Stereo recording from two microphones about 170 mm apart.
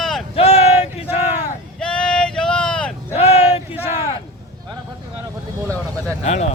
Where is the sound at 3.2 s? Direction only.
35° left (ahead or behind).